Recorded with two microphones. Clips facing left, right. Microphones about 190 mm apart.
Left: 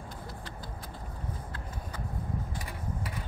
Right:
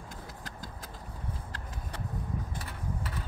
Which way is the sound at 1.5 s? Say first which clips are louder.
Left 1 dB; 80° right.